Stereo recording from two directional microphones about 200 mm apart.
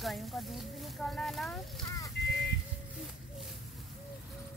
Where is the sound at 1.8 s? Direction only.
15° left (ahead or behind).